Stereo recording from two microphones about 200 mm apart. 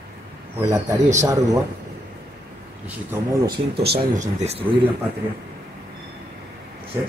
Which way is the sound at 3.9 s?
30° right (ahead or behind).